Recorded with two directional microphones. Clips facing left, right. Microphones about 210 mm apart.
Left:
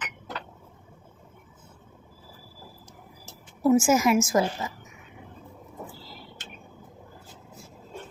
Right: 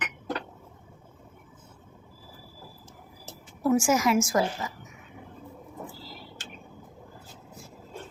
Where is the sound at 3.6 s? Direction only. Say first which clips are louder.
Left 3 dB; 25° left (ahead or behind).